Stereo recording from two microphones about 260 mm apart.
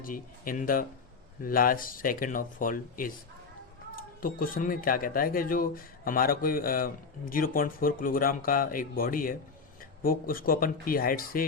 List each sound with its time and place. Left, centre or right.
0.0 s speech: left